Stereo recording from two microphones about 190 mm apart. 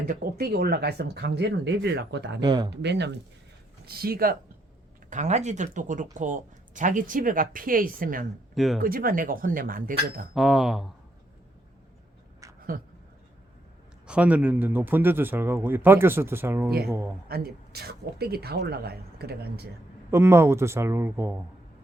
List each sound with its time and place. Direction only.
0.1 s speech: 50° right (ahead or behind)
2.4 s speech: 20° right (ahead or behind)
2.8 s speech: 65° right (ahead or behind)
3.8 s speech: 55° right (ahead or behind)
5.0 s speech: 40° right (ahead or behind)
8.5 s speech: centre (ahead or behind)
8.8 s speech: 50° right (ahead or behind)
10.3 s speech: centre (ahead or behind)
12.5 s a sound: 50° right (ahead or behind)
14.1 s speech: 5° right (ahead or behind)
17.2 s speech: 55° right (ahead or behind)
20.1 s speech: 15° right (ahead or behind)